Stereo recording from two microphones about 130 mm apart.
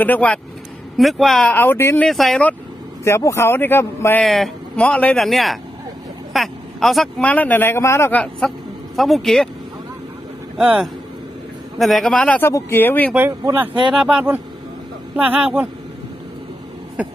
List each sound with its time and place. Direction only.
0.0 s speech: 15° left (ahead or behind)
0.9 s speech: centre (ahead or behind)
1.5 s speech: 15° left (ahead or behind)
2.0 s speech: centre (ahead or behind)
3.0 s speech: 20° left (ahead or behind)
4.2 s a man's voice: centre (ahead or behind)
10.6 s speech: 10° right (ahead or behind)
11.8 s speech: centre (ahead or behind)
12.4 s speech: 20° left (ahead or behind)
13.1 s speech: 15° right (ahead or behind)